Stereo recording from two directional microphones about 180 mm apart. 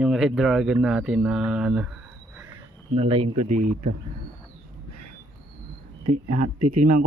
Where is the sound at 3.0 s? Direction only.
35° right (ahead or behind).